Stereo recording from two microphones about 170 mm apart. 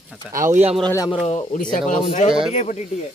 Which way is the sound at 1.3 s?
40° left (ahead or behind).